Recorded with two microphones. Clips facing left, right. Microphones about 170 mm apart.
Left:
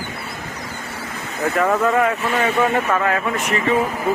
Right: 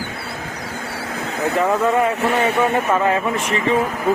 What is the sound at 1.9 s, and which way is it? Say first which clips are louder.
Speech: right 1 dB; 30° right (ahead or behind).